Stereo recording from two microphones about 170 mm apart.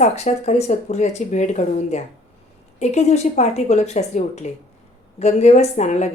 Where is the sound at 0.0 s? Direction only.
40° left (ahead or behind).